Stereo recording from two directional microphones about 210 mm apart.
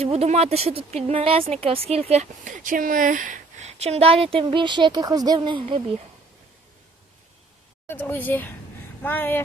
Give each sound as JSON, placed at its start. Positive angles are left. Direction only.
{"t": 0.0, "sound": "speech", "side_deg": -30}
{"t": 7.9, "sound": "speech", "side_deg": 10}